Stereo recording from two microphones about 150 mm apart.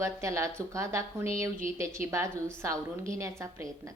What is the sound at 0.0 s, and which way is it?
A woman's voice, 20° right (ahead or behind).